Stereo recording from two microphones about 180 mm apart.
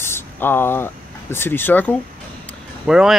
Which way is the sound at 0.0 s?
10° left (ahead or behind).